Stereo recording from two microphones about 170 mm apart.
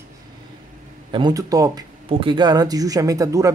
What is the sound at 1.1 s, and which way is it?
Speech, 25° right (ahead or behind).